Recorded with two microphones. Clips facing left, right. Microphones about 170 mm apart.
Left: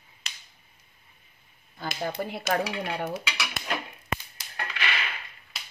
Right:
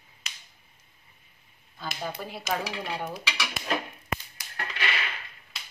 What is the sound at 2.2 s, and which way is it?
Dishes, 60° left (ahead or behind).